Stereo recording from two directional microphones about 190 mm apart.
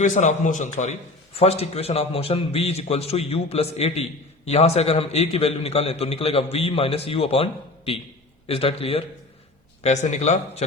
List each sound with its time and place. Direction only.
0.0 s a man's voice: 40° left (ahead or behind)